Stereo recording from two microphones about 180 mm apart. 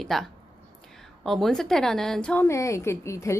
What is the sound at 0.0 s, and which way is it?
A woman's voice, centre (ahead or behind).